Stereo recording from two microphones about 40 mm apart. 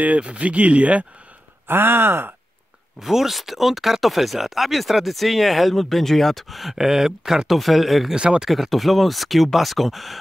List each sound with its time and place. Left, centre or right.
0.2 s speech: right
1.7 s speech: right
3.0 s speech: centre
7.4 s speech: centre
8.1 s speech: right
8.5 s speech: centre